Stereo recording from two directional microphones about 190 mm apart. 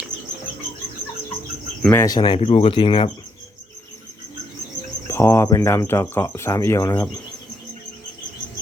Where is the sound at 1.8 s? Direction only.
10° left (ahead or behind); by 3.1 s 25° left (ahead or behind).